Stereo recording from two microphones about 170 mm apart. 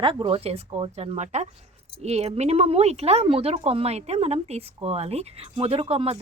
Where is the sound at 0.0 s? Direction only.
30° right (ahead or behind).